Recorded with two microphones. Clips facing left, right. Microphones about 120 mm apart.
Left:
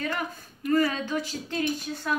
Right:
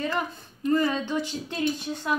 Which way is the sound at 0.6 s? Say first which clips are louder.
Right 1 dB; 25° right (ahead or behind).